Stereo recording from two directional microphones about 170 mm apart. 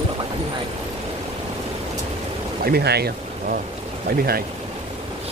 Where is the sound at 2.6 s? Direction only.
70° right (ahead or behind).